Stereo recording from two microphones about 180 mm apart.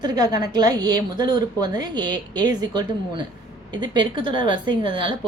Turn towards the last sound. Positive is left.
turn(degrees=-25)  # may be behind; listen again after turning